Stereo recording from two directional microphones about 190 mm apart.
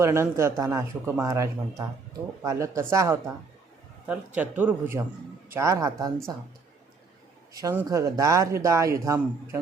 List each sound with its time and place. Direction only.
0.0 s speech: 15° right (ahead or behind)
7.5 s speech: 15° right (ahead or behind)